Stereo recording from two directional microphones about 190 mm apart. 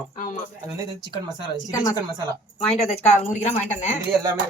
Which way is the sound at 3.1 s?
35° left (ahead or behind).